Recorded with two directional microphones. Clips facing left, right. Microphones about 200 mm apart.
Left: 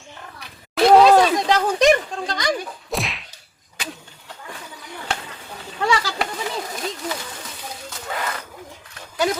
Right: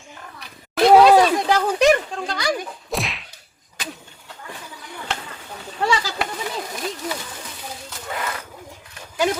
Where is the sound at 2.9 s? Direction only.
Centre (ahead or behind).